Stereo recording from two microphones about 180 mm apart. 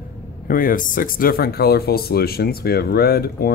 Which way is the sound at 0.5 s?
50° left (ahead or behind).